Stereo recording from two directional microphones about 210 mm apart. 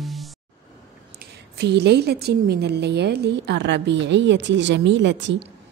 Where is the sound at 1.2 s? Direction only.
50° right (ahead or behind).